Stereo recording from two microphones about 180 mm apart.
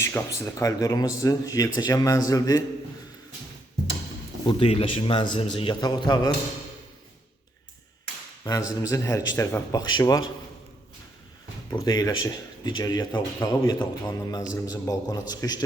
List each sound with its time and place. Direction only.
0.0 s speech: 15° left (ahead or behind)
4.4 s speech: 30° left (ahead or behind)
8.4 s a man's voice: 20° left (ahead or behind)
11.7 s speech: 20° left (ahead or behind)